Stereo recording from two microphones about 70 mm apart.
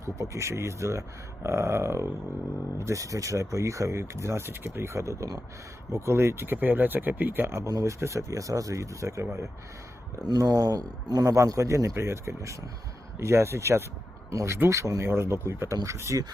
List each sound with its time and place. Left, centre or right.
0.0 s speech: right
7.6 s speech: right
10.2 s speech: right